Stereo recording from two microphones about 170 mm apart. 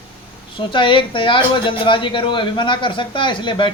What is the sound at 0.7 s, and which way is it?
Speech, 30° left (ahead or behind).